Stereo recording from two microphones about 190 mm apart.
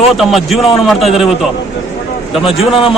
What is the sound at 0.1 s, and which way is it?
A man's voice, centre (ahead or behind).